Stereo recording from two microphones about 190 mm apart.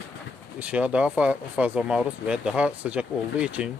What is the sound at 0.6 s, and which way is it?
Speech, 5° right (ahead or behind).